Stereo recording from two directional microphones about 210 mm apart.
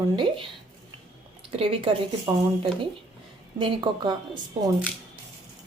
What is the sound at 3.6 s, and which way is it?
Speech, 20° right (ahead or behind).